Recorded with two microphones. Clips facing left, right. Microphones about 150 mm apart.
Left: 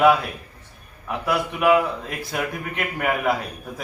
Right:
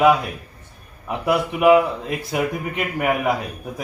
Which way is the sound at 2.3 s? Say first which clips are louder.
Right 4 dB; 5° right (ahead or behind).